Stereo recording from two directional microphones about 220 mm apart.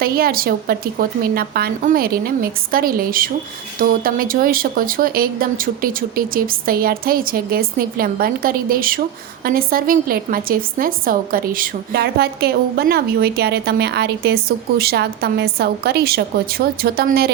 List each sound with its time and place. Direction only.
0.0 s a woman's voice: 40° right (ahead or behind)